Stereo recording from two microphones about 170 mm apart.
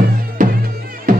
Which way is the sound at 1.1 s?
50° right (ahead or behind).